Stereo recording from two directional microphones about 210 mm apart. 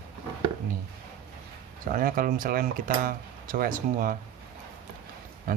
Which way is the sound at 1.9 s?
40° right (ahead or behind).